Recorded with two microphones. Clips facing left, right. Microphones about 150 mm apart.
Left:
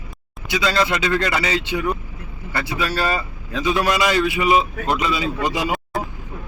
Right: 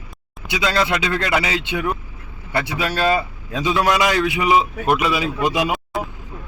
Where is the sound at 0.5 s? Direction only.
10° right (ahead or behind).